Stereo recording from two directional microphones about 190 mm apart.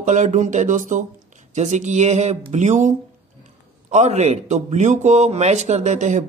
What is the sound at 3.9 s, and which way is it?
A man's voice, 35° right (ahead or behind).